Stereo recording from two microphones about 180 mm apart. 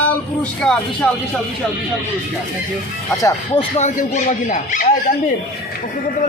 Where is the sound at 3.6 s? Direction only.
40° left (ahead or behind).